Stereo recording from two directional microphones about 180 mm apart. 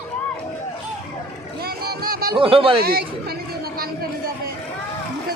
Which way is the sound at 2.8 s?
55° right (ahead or behind).